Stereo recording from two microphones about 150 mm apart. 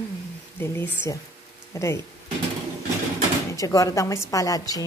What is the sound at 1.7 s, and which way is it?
Speech, 20° left (ahead or behind).